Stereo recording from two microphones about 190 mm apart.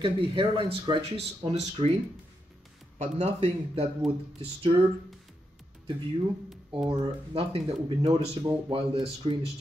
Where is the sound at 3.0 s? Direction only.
35° right (ahead or behind).